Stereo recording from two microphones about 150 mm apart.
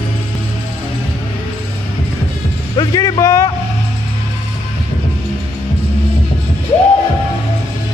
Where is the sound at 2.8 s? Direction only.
25° left (ahead or behind).